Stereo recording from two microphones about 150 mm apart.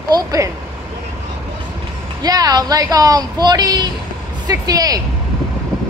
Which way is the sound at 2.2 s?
25° right (ahead or behind).